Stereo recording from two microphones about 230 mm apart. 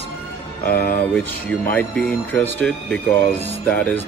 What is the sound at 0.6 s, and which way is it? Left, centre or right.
Speech, left.